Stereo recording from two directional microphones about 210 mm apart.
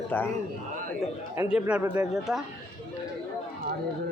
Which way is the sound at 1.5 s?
5° right (ahead or behind).